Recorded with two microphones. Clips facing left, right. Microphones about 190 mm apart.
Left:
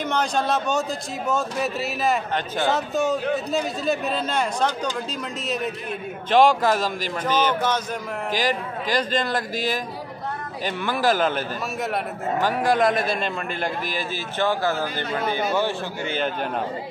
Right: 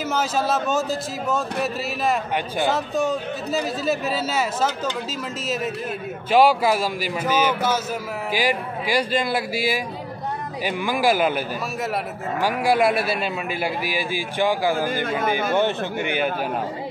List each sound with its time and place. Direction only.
0.0 s speech: 5° right (ahead or behind)
6.3 s a man's voice: 10° right (ahead or behind)